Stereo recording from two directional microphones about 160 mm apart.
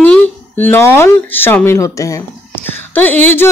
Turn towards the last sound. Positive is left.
turn(degrees=10)  # may be behind; listen again after turning